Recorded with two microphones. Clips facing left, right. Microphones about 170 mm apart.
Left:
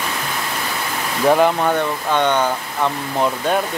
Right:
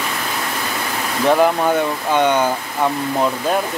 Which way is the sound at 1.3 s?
Centre (ahead or behind).